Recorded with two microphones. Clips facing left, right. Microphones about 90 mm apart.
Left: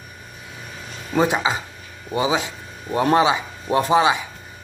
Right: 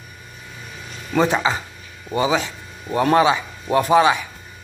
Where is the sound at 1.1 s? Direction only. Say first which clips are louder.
Right 1 dB; 15° left (ahead or behind).